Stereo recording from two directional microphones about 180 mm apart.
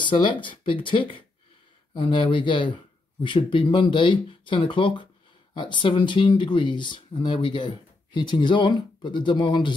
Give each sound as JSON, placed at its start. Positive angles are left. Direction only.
{"t": 0.0, "sound": "speech", "side_deg": 25}